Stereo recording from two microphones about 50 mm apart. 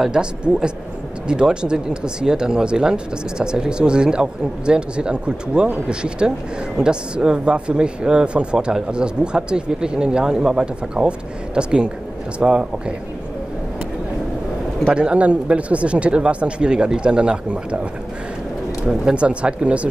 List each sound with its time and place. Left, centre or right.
0.0 s speech: centre
15.0 s speech: right
18.9 s speech: centre